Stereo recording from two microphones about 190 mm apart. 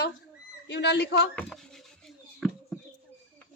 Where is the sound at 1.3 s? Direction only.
5° left (ahead or behind).